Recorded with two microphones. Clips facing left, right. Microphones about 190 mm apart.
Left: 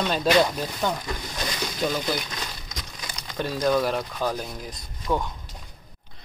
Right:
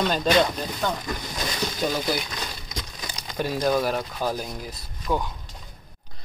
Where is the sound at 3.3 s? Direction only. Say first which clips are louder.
Even; 10° right (ahead or behind).